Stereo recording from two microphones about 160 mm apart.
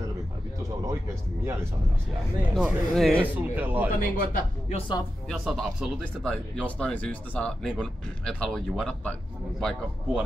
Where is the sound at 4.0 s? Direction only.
60° left (ahead or behind).